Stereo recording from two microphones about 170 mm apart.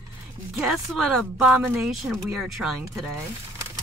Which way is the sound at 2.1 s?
Centre (ahead or behind).